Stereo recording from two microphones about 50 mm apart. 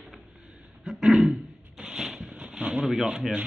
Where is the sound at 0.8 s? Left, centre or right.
Centre.